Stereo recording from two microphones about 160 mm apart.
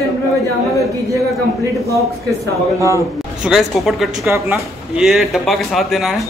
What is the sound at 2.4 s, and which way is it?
Speech, 20° left (ahead or behind).